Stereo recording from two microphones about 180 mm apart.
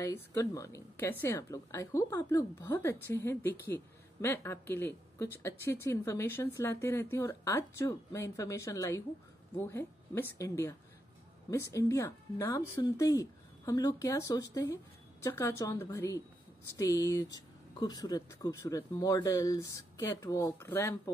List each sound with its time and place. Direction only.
0.0 s a woman's voice: 15° left (ahead or behind)